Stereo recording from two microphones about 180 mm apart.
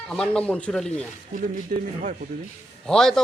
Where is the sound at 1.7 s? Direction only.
50° right (ahead or behind).